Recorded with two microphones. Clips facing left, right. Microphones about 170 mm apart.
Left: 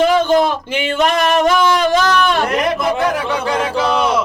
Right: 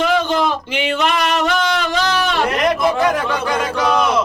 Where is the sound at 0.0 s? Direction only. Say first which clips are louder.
Left 4 dB; 45° left (ahead or behind).